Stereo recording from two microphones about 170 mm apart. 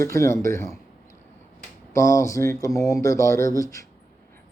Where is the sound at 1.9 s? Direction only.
15° left (ahead or behind).